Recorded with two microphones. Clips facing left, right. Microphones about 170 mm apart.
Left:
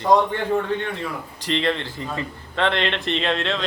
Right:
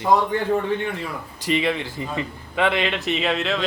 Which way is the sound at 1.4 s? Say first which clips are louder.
Right 1 dB; 10° right (ahead or behind).